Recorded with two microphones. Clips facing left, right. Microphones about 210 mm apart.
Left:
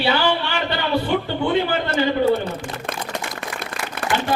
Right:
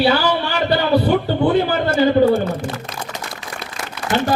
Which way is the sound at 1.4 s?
40° right (ahead or behind).